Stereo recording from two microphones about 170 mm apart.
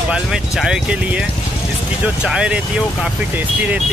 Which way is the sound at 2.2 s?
5° right (ahead or behind).